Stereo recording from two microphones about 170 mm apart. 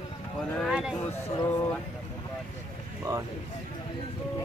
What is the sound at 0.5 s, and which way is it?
Speech, centre (ahead or behind).